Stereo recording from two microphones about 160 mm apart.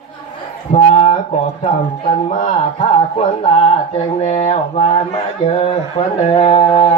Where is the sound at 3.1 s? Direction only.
40° left (ahead or behind).